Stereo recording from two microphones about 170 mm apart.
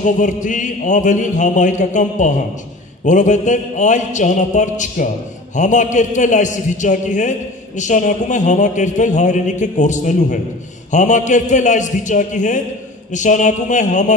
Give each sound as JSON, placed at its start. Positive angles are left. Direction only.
{"t": 0.0, "sound": "a man's voice", "side_deg": 50}